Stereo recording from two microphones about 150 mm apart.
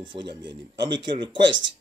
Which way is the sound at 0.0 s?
30° right (ahead or behind).